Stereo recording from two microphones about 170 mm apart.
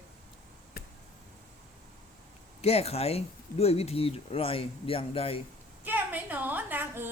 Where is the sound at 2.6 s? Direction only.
35° left (ahead or behind).